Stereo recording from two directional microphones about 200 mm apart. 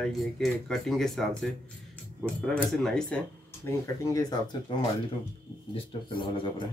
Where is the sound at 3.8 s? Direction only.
15° left (ahead or behind).